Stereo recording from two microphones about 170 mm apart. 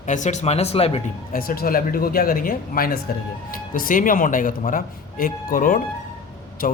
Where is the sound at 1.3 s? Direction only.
60° left (ahead or behind).